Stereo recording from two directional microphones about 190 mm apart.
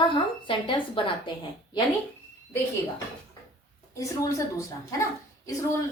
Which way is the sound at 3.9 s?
15° left (ahead or behind).